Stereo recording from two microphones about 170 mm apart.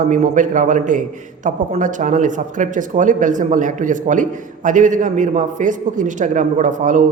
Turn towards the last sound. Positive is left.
turn(degrees=-50)  # may be behind; listen again after turning